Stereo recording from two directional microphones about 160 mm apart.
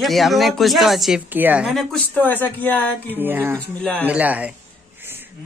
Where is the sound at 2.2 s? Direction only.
10° left (ahead or behind).